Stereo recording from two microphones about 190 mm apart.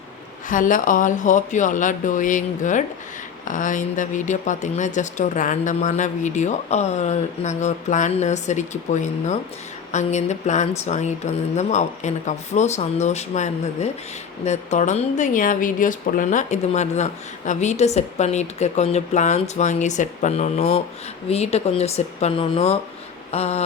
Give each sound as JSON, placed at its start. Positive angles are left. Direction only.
{"t": 0.4, "sound": "speech", "side_deg": 45}